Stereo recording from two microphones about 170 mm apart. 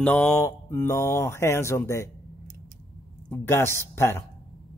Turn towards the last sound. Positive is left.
turn(degrees=15)  # may be behind; listen again after turning